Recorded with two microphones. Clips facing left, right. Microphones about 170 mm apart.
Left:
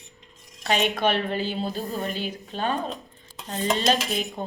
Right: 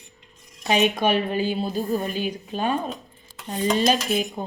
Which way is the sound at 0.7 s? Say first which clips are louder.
Right 3 dB; 15° right (ahead or behind).